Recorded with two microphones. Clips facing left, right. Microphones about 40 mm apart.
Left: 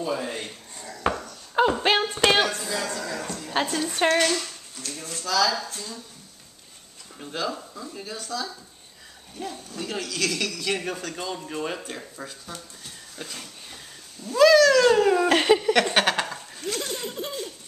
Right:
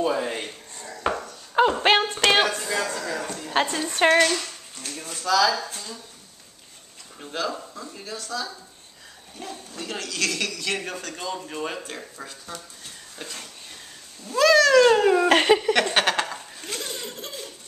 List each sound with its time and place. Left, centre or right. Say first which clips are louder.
0.2 s speech: right 3 dB; right
0.7 s chopping: even; centre
1.8 s a sound: right 2 dB; centre
3.6 s speech: even; centre
4.0 s speech: right 4 dB; centre
4.8 s speech: right 4 dB; right
7.2 s speech: right 1 dB; centre
16.6 s laughter: left 4 dB; centre
17.0 s laughter: left 4 dB; centre